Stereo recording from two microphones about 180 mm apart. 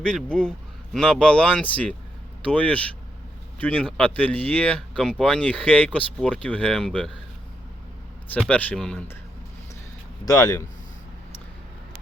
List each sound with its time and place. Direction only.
0.0 s speech: 5° left (ahead or behind)
8.3 s speech: 5° left (ahead or behind)
10.2 s speech: 20° left (ahead or behind)